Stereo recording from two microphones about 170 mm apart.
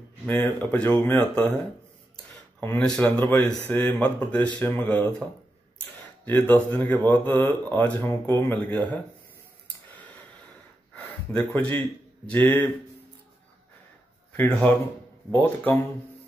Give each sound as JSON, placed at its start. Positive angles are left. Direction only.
{"t": 0.3, "sound": "speech", "side_deg": 10}
{"t": 2.6, "sound": "speech", "side_deg": 10}
{"t": 6.4, "sound": "speech", "side_deg": 10}
{"t": 11.0, "sound": "a sound", "side_deg": 10}
{"t": 12.3, "sound": "speech", "side_deg": 10}
{"t": 14.3, "sound": "speech", "side_deg": 10}